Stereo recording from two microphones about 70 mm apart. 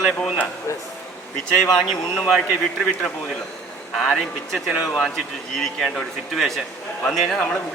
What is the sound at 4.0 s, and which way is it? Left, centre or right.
A man's voice, centre.